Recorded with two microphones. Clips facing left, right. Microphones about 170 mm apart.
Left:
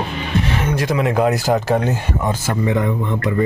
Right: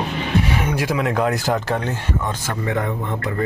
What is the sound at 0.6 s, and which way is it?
Speech, 10° right (ahead or behind).